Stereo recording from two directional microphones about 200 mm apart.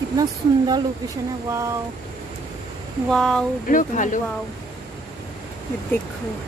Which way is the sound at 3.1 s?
5° left (ahead or behind).